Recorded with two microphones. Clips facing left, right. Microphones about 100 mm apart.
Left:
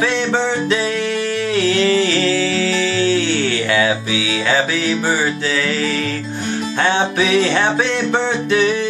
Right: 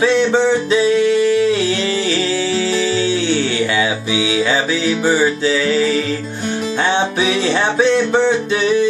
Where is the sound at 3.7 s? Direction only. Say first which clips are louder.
Left 1 dB; 20° right (ahead or behind).